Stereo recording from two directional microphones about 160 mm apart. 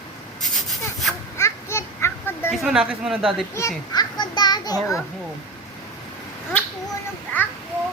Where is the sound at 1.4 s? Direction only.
15° left (ahead or behind).